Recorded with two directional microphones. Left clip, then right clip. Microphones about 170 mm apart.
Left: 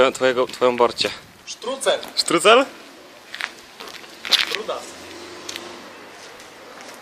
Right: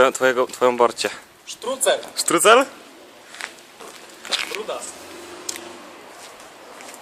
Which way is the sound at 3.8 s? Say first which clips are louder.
Left 4 dB; centre (ahead or behind).